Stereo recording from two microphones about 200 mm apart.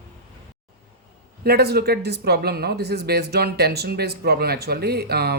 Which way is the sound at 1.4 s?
50° right (ahead or behind).